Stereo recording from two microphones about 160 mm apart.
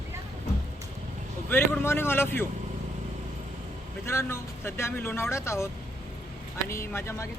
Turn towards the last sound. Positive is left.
turn(degrees=15)  # may be behind; listen again after turning